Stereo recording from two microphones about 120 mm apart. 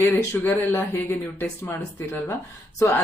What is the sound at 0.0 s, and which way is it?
Speech, 20° left (ahead or behind).